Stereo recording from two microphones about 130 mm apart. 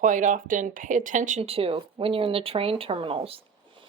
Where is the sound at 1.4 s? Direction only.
45° right (ahead or behind).